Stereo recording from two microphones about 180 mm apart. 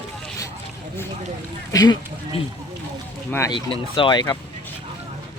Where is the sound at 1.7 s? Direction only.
20° left (ahead or behind).